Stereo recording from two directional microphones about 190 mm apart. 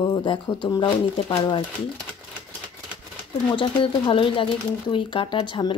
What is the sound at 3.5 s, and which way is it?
A woman's voice, 25° left (ahead or behind).